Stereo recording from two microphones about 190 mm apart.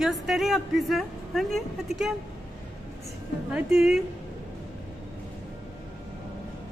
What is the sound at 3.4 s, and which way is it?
Speech, 5° right (ahead or behind).